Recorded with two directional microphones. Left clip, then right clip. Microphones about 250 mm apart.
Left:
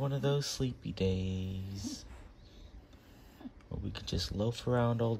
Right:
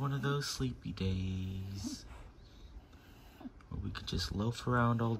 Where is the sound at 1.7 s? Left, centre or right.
Left.